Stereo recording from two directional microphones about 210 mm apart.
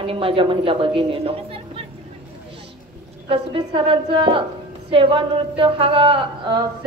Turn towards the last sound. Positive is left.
turn(degrees=-25)  # may be behind; listen again after turning